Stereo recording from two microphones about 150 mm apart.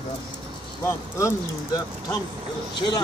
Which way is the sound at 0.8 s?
20° left (ahead or behind).